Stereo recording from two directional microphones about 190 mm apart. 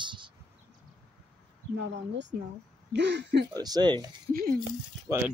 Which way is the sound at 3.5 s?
20° right (ahead or behind).